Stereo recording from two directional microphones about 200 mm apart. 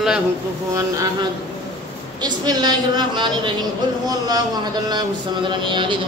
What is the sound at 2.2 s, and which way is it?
A woman's voice, 20° right (ahead or behind).